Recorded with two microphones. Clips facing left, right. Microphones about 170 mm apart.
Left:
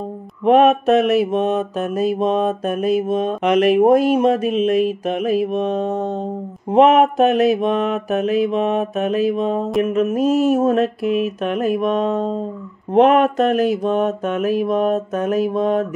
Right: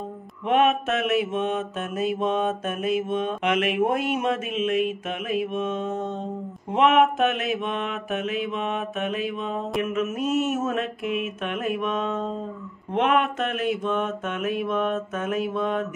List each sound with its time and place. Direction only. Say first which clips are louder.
0.5 s mantra: left 9 dB; 35° left (ahead or behind)